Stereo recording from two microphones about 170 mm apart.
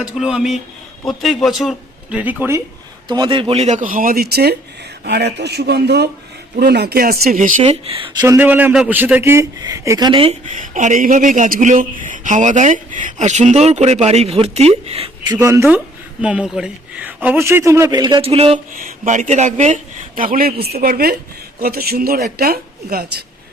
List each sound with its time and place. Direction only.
0.0 s speech: 5° right (ahead or behind)
3.1 s speech: 30° right (ahead or behind); by 7.5 s 55° right (ahead or behind)
7.6 s speech: 35° right (ahead or behind)
8.2 s a man's voice: 10° right (ahead or behind); by 10.3 s 30° right (ahead or behind)
10.6 s speech: 45° right (ahead or behind)
15.4 s a man's voice: 20° right (ahead or behind)
16.2 s a man's voice: 5° right (ahead or behind); by 18.6 s 35° right (ahead or behind)
18.7 s speech: 55° right (ahead or behind)